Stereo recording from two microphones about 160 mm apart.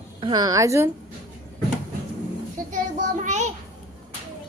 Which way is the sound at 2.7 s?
50° right (ahead or behind).